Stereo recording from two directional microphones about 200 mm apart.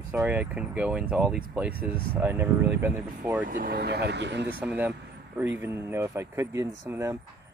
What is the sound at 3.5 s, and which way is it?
Speech, 45° right (ahead or behind).